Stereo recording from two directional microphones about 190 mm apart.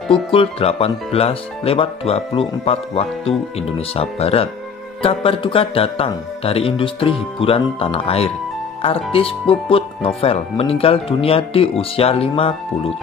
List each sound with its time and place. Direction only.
0.1 s speech: 30° left (ahead or behind)